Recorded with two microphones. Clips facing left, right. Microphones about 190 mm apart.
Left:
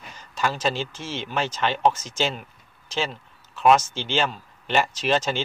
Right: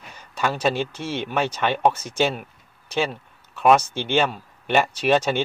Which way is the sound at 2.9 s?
55° right (ahead or behind).